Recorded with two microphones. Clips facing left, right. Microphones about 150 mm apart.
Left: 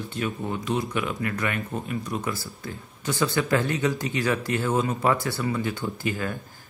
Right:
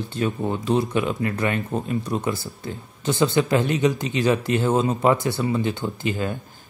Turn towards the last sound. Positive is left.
turn(degrees=-20)  # may be behind; listen again after turning